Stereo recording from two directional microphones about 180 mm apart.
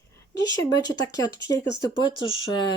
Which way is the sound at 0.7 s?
20° left (ahead or behind).